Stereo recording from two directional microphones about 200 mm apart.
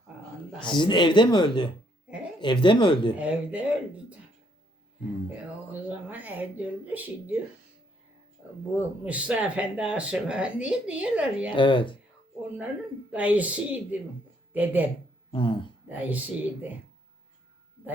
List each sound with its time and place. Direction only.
0.6 s speech: 25° left (ahead or behind)
3.2 s speech: 5° right (ahead or behind)
5.8 s speech: 10° right (ahead or behind)
8.7 s speech: 5° right (ahead or behind)
11.5 s speech: 25° left (ahead or behind)
13.1 s speech: 5° right (ahead or behind)
15.3 s speech: 25° left (ahead or behind)
15.9 s speech: 10° right (ahead or behind)